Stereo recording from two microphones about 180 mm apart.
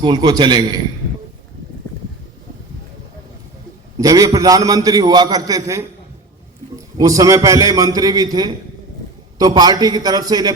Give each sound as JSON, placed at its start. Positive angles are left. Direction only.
{"t": 0.0, "sound": "a man's voice", "side_deg": -20}
{"t": 3.9, "sound": "a man's voice", "side_deg": -20}